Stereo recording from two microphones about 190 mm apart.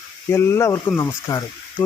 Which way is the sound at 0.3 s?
15° left (ahead or behind).